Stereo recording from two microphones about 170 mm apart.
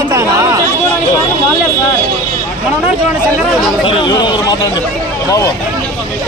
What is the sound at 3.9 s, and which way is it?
Speech, 30° left (ahead or behind).